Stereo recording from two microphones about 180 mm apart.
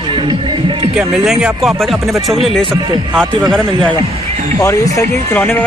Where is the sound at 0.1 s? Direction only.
30° right (ahead or behind).